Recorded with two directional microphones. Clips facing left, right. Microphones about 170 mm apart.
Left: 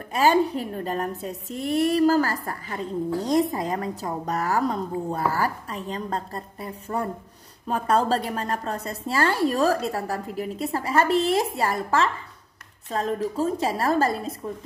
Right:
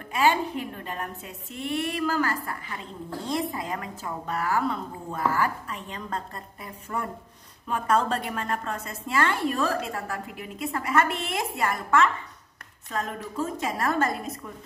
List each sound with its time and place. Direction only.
0.1 s a woman's voice: 40° left (ahead or behind)